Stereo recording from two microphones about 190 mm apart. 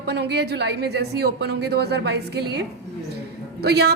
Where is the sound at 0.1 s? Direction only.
60° right (ahead or behind).